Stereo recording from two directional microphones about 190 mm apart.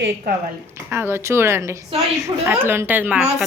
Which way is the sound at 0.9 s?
15° right (ahead or behind).